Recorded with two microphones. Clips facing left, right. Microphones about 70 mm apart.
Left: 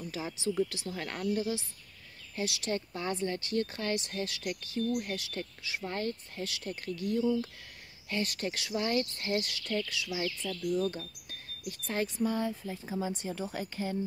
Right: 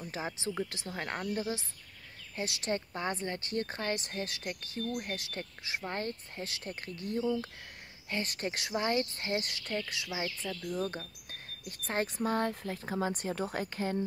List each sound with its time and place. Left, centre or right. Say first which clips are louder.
0.0 s speech: left 2 dB; right
9.4 s speech: left 2 dB; right
10.5 s speech: left 5 dB; right
11.8 s speech: left 1 dB; right